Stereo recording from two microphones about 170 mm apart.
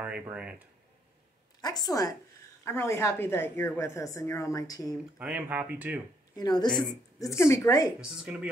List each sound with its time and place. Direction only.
0.0 s speech: 5° right (ahead or behind)
1.6 s a woman's voice: 25° left (ahead or behind)
5.2 s speech: 10° right (ahead or behind)
6.3 s a woman's voice: 25° left (ahead or behind)
8.0 s speech: 5° right (ahead or behind)